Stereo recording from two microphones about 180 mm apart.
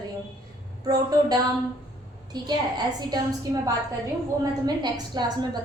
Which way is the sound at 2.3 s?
20° right (ahead or behind).